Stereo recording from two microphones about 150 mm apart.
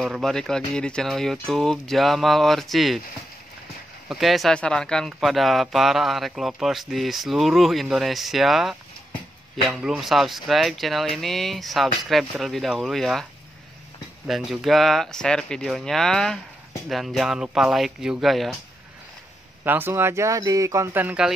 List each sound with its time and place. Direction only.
0.0 s speech: centre (ahead or behind)
4.1 s speech: centre (ahead or behind)
19.6 s speech: 15° right (ahead or behind)